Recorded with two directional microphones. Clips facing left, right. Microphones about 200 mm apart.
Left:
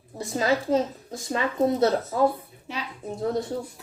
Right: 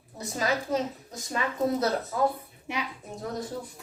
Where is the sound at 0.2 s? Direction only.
30° left (ahead or behind).